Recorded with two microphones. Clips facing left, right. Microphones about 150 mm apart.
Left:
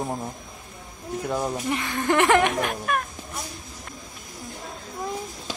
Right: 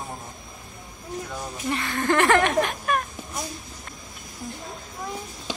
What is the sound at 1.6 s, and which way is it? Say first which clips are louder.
Speech: right 4 dB; 20° left (ahead or behind).